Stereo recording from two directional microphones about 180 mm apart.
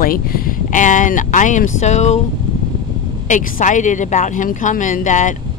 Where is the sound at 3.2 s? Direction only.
45° left (ahead or behind).